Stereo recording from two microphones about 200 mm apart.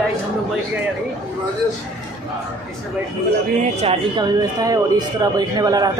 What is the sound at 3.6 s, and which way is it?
Speech, 30° right (ahead or behind).